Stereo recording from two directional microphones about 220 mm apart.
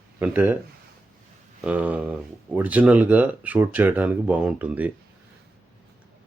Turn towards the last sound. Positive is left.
turn(degrees=-5)  # may be behind; listen again after turning